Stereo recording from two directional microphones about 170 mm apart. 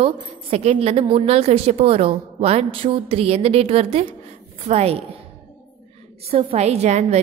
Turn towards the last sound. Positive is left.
turn(degrees=-40)  # may be behind; listen again after turning